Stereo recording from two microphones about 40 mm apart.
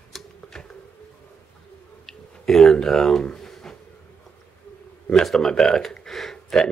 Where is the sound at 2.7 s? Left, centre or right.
Centre.